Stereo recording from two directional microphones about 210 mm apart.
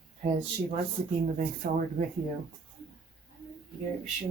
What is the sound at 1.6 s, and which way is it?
Speech, 40° right (ahead or behind).